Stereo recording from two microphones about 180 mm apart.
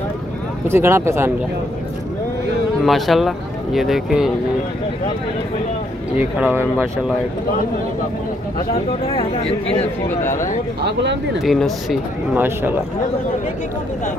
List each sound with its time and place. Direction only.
0.7 s speech: 15° right (ahead or behind)
2.8 s speech: centre (ahead or behind)
6.1 s speech: 10° right (ahead or behind)
8.7 s speech: 30° left (ahead or behind)
10.0 s speech: 15° left (ahead or behind)
10.8 s speech: 70° right (ahead or behind)
11.3 s speech: centre (ahead or behind)
12.4 s speech: 10° right (ahead or behind)